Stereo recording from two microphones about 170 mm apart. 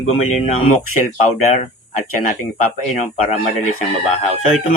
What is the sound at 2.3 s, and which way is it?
Speech, 45° left (ahead or behind).